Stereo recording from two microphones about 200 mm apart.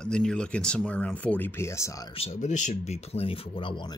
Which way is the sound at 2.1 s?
35° left (ahead or behind).